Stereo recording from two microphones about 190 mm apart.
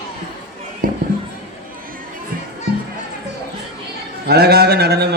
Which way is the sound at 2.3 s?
50° right (ahead or behind).